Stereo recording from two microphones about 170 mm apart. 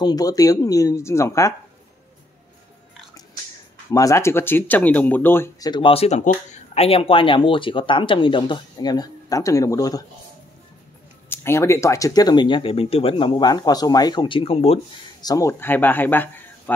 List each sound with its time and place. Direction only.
0.0 s speech: 20° left (ahead or behind)
3.9 s speech: 20° left (ahead or behind)
5.7 s speech: 30° left (ahead or behind)
11.2 s speech: 15° left (ahead or behind); by 14.8 s 35° left (ahead or behind)
15.2 s speech: 20° left (ahead or behind)